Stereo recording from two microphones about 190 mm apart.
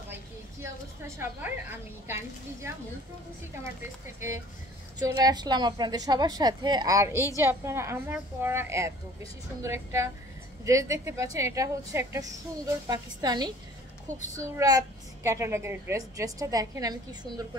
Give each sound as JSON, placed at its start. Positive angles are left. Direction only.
{"t": 0.1, "sound": "a woman's voice", "side_deg": -15}
{"t": 4.9, "sound": "a woman's voice", "side_deg": -20}